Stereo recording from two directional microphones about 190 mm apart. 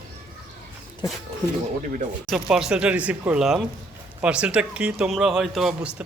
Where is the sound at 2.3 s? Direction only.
Centre (ahead or behind).